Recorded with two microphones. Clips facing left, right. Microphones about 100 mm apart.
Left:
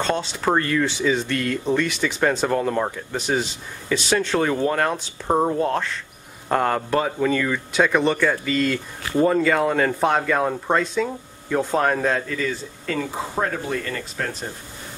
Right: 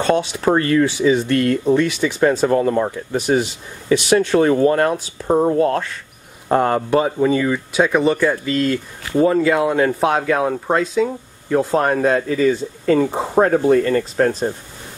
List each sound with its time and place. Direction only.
0.1 s speech: 10° right (ahead or behind)
3.3 s speech: 30° right (ahead or behind)
3.9 s speech: 10° right (ahead or behind)
5.2 s speech: 5° left (ahead or behind)
6.5 s speech: 15° right (ahead or behind)
12.8 s speech: 30° right (ahead or behind)
13.3 s speech: 40° right (ahead or behind)